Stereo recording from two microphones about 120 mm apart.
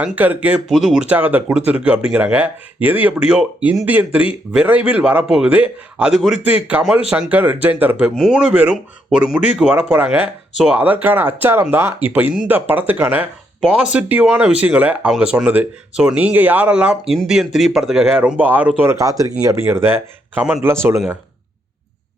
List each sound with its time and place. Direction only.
0.0 s speech: 10° right (ahead or behind)
0.7 s speech: centre (ahead or behind)
18.2 s speech: 15° right (ahead or behind)
18.8 s speech: 25° right (ahead or behind)